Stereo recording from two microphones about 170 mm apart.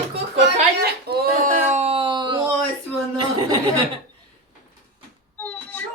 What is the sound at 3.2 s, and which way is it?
Chuckle, 25° right (ahead or behind).